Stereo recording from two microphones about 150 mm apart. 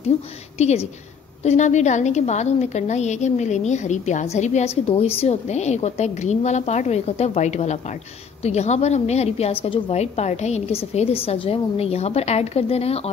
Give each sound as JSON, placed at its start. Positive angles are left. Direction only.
{"t": 0.6, "sound": "a woman's voice", "side_deg": 45}